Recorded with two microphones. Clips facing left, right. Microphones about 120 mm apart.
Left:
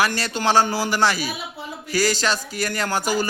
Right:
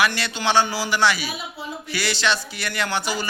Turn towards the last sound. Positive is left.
turn(degrees=45)  # may be behind; listen again after turning